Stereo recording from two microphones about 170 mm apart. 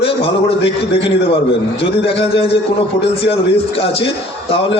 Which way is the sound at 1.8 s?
35° left (ahead or behind).